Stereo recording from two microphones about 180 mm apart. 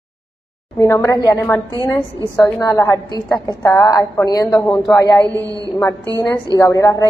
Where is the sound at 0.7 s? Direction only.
15° left (ahead or behind).